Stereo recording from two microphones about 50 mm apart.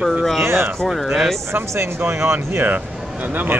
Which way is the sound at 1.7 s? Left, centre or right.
Right.